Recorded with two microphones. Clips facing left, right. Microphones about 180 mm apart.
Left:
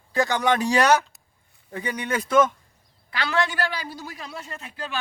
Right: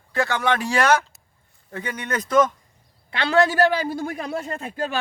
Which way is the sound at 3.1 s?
30° right (ahead or behind).